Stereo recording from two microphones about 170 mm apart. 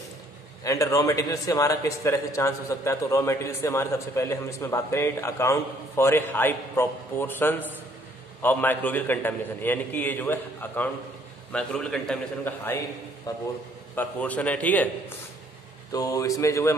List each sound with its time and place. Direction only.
0.7 s a man's voice: 20° left (ahead or behind)
13.9 s a man's voice: 10° left (ahead or behind)
15.9 s speech: 20° left (ahead or behind)